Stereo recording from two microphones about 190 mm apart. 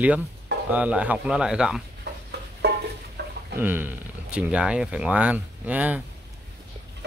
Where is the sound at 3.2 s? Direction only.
60° right (ahead or behind).